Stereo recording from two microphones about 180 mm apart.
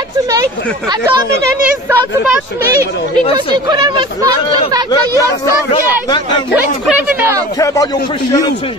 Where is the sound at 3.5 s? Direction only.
25° right (ahead or behind).